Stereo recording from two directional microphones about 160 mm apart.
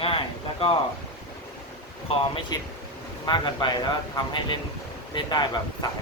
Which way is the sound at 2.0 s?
30° left (ahead or behind).